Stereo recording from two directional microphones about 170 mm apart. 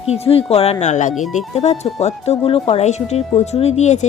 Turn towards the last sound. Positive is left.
turn(degrees=45)  # may be behind; listen again after turning